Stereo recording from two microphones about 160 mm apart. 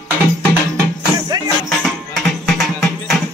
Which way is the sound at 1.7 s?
Centre (ahead or behind).